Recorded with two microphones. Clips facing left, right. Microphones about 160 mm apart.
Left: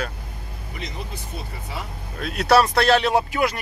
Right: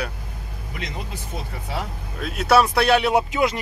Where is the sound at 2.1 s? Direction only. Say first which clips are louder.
Even; 5° right (ahead or behind); by 3.5 s 20° right (ahead or behind).